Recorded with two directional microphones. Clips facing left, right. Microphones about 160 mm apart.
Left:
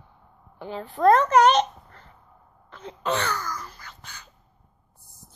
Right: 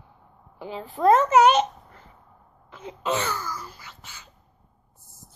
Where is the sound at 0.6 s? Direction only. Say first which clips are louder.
Left 1 dB; 5° right (ahead or behind).